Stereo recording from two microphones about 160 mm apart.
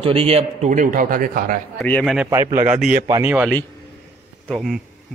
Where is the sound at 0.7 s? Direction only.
55° right (ahead or behind).